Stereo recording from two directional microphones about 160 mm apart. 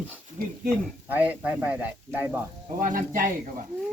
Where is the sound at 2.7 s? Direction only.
60° right (ahead or behind).